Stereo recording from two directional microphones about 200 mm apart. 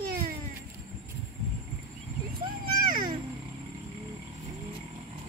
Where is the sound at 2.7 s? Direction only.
45° right (ahead or behind).